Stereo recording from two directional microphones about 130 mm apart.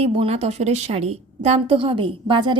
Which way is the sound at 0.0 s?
50° right (ahead or behind).